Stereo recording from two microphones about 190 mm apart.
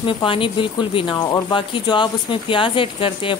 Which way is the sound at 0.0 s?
25° left (ahead or behind).